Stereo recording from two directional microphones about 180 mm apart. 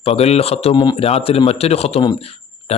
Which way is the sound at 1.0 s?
35° left (ahead or behind).